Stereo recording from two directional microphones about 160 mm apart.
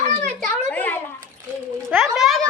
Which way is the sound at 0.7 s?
10° left (ahead or behind).